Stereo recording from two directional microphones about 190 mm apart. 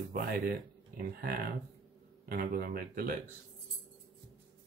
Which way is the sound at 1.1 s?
50° right (ahead or behind).